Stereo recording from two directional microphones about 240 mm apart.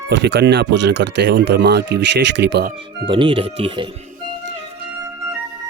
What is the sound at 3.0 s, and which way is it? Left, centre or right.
Speech, right.